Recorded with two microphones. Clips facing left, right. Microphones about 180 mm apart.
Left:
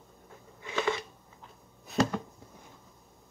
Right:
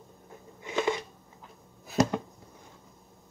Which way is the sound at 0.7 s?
20° right (ahead or behind).